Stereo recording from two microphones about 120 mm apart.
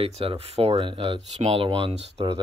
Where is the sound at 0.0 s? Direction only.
50° right (ahead or behind).